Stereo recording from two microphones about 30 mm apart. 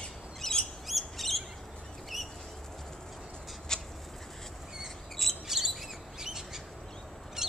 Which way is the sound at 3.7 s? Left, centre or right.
Centre.